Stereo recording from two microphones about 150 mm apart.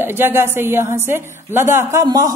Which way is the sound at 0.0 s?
15° right (ahead or behind).